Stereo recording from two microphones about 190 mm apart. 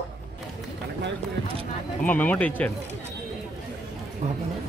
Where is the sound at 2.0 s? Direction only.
10° left (ahead or behind).